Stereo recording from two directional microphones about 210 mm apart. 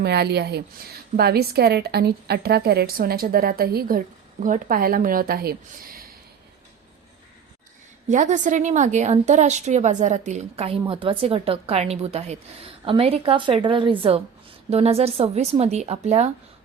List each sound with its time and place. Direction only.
0.0 s a woman's voice: 50° right (ahead or behind)
8.0 s a woman's voice: 35° right (ahead or behind)